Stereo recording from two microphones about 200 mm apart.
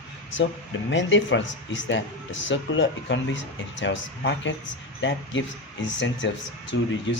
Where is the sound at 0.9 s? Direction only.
65° left (ahead or behind).